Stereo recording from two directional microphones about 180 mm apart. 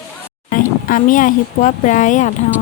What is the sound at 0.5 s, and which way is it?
Speech, 50° left (ahead or behind).